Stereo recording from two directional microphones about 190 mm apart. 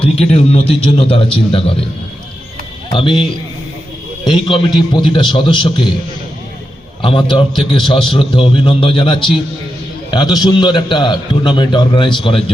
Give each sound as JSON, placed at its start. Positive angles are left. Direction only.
{"t": 0.0, "sound": "a man's voice", "side_deg": 30}
{"t": 2.9, "sound": "a man's voice", "side_deg": 25}
{"t": 4.3, "sound": "a man's voice", "side_deg": 25}
{"t": 7.0, "sound": "a man's voice", "side_deg": 25}